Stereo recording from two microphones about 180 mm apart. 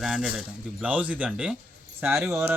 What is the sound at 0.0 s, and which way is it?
Speech, centre (ahead or behind).